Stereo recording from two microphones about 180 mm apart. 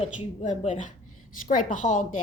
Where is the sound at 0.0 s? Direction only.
40° left (ahead or behind).